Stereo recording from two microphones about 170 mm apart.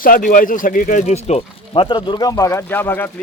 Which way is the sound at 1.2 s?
35° left (ahead or behind).